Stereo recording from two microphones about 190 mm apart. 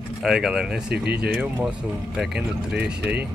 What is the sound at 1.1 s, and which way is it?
Speech, 55° right (ahead or behind).